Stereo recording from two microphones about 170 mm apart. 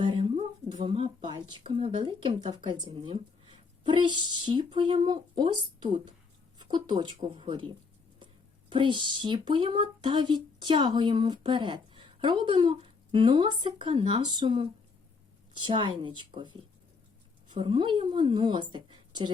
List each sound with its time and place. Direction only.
0.0 s a sound: 30° right (ahead or behind)
0.8 s speech: 30° right (ahead or behind)
8.7 s speech: 30° right (ahead or behind)
17.6 s speech: 30° right (ahead or behind)